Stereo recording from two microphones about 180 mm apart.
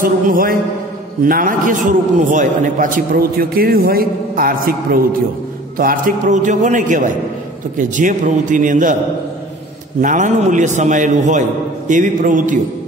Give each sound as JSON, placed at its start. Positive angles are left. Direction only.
{"t": 0.0, "sound": "a man's voice", "side_deg": -50}
{"t": 10.0, "sound": "a man's voice", "side_deg": -45}